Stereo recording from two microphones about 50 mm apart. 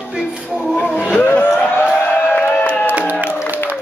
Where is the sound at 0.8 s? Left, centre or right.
Left.